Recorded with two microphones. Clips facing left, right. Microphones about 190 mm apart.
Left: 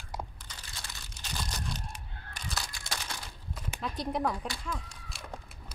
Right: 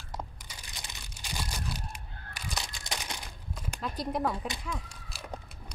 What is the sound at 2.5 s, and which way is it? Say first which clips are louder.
Crumpling: right 1 dB; 20° right (ahead or behind).